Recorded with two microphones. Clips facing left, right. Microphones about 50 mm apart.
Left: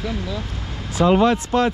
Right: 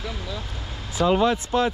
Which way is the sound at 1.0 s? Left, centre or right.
Left.